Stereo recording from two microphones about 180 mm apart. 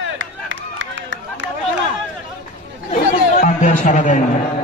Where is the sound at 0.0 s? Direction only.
90° right.